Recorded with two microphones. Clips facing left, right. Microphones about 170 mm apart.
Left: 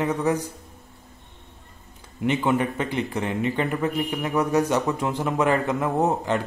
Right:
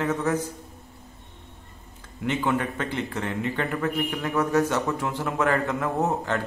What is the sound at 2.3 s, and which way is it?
A man's voice, 15° left (ahead or behind).